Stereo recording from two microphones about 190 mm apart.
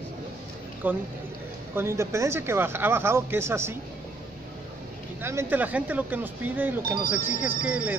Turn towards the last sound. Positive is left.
turn(degrees=-5)  # may be behind; listen again after turning